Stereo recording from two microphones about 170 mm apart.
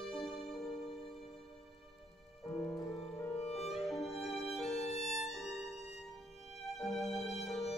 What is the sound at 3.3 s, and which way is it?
Music, 35° left (ahead or behind).